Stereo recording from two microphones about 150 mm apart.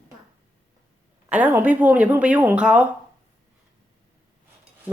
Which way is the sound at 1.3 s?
10° right (ahead or behind).